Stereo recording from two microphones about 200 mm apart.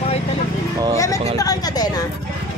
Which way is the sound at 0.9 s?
15° left (ahead or behind).